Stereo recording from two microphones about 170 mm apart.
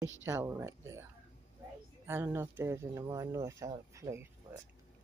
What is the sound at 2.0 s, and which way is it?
Speech, 15° right (ahead or behind).